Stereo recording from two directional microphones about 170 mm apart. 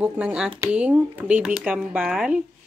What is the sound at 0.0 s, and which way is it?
Speech, 5° right (ahead or behind).